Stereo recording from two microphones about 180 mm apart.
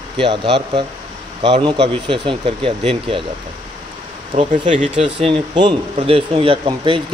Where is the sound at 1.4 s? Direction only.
25° right (ahead or behind).